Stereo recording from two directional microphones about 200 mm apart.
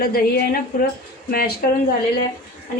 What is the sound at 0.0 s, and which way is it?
Speech, 50° left (ahead or behind).